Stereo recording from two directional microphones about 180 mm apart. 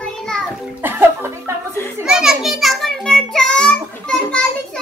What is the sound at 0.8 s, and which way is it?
Music, 10° right (ahead or behind).